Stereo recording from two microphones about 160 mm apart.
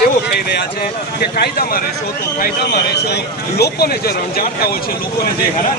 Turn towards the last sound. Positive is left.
turn(degrees=70)  # may be behind; listen again after turning